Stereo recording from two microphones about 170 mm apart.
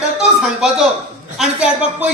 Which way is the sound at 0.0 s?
5° right (ahead or behind).